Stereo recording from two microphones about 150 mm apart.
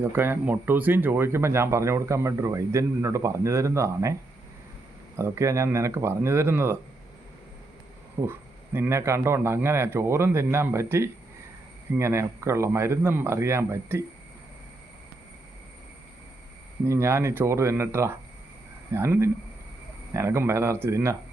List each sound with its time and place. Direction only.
0.0 s speech: 15° right (ahead or behind)
8.2 s a man's voice: 15° right (ahead or behind)
16.8 s a man's voice: 20° right (ahead or behind)